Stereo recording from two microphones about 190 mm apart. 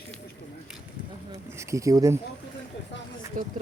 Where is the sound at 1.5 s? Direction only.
15° right (ahead or behind).